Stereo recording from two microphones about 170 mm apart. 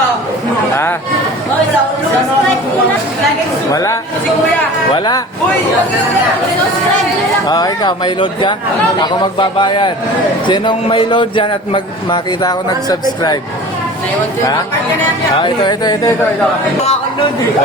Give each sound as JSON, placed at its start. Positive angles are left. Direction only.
{"t": 3.7, "sound": "a man's voice", "side_deg": 20}
{"t": 7.4, "sound": "a man's voice", "side_deg": 25}
{"t": 15.4, "sound": "a man's voice", "side_deg": 25}